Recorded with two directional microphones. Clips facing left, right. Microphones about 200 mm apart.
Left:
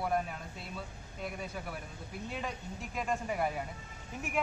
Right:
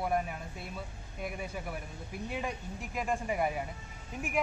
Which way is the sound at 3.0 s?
10° right (ahead or behind).